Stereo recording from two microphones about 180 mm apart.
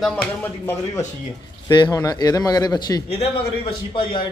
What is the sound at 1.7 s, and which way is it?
Speech, 20° left (ahead or behind).